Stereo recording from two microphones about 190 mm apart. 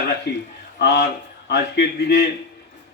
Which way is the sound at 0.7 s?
60° left (ahead or behind).